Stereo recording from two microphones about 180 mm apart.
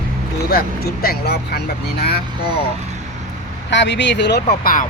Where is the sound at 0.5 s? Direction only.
60° left (ahead or behind).